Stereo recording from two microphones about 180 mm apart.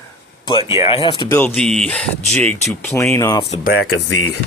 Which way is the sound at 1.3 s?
10° left (ahead or behind).